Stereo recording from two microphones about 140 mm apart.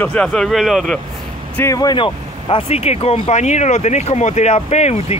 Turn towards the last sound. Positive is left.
turn(degrees=50)  # may be behind; listen again after turning